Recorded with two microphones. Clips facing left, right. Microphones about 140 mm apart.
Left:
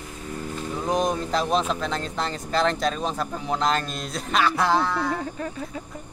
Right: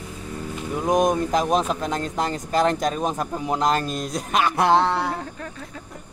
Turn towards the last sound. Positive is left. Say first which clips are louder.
# right 4 dB
turn(degrees=-25)  # may be behind; listen again after turning